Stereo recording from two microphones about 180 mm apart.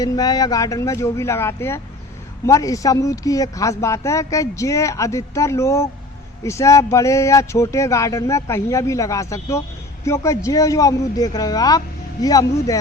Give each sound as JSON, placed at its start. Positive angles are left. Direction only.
{"t": 0.0, "sound": "speech", "side_deg": 20}